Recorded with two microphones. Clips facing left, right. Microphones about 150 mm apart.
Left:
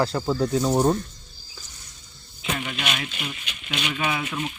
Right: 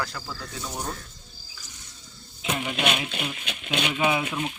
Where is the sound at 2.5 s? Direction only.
15° right (ahead or behind).